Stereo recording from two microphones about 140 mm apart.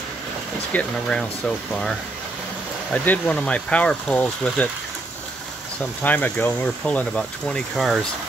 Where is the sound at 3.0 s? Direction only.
10° left (ahead or behind).